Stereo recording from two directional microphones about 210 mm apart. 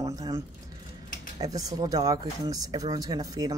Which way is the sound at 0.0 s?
15° right (ahead or behind).